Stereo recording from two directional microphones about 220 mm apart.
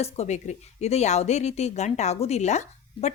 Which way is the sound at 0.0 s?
30° left (ahead or behind).